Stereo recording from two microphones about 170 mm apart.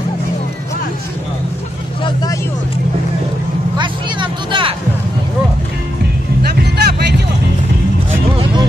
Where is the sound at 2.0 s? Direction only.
20° left (ahead or behind).